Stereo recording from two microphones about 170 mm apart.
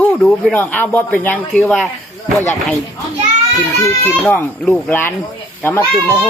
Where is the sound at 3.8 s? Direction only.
15° left (ahead or behind).